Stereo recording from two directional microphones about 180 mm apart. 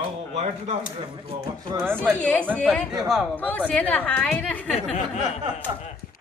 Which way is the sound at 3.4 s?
10° left (ahead or behind).